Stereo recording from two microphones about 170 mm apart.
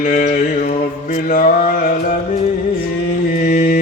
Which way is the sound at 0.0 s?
50° left (ahead or behind).